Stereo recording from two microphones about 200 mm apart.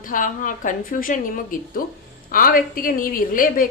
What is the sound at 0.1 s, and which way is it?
A woman's voice, 40° left (ahead or behind).